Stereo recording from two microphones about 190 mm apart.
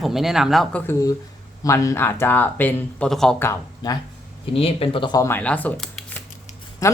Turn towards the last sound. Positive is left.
turn(degrees=15)  # may be behind; listen again after turning